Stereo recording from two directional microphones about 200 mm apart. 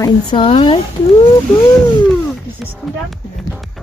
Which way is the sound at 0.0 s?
20° left (ahead or behind).